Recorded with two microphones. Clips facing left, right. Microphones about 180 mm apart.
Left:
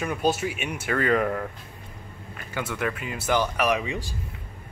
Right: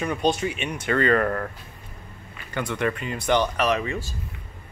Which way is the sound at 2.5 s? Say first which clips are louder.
Right 3 dB; 5° left (ahead or behind).